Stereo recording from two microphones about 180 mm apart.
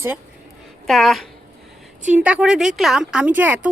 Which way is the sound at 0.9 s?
Centre (ahead or behind).